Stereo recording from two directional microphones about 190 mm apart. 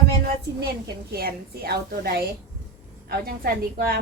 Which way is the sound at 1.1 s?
55° right (ahead or behind).